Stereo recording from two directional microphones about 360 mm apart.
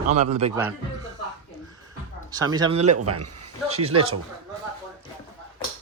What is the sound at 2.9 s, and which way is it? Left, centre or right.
Speech, right.